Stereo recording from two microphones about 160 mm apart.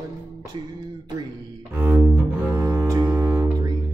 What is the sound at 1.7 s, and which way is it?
Bowed string instrument, 10° right (ahead or behind).